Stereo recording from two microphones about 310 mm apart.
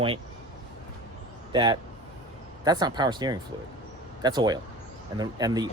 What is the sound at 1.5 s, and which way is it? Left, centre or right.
Speech, centre.